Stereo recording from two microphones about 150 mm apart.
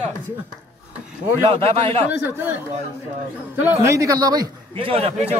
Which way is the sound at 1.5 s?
40° right (ahead or behind).